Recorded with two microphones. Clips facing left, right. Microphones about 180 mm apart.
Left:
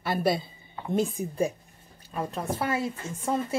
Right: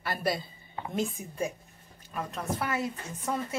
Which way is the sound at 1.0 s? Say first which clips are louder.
Left 5 dB; 35° left (ahead or behind).